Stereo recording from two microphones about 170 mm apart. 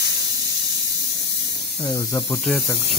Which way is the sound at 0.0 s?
80° left.